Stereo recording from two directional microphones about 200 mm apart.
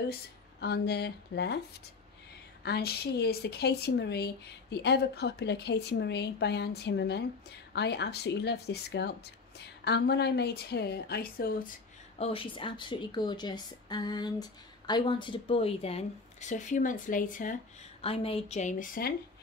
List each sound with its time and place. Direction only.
0.6 s speech: 55° left (ahead or behind)
12.2 s a woman's voice: 25° left (ahead or behind)
18.0 s a woman's voice: 30° left (ahead or behind); by 19.1 s 45° left (ahead or behind)